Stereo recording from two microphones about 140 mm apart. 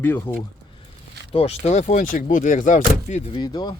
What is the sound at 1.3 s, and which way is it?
Speech, 45° left (ahead or behind).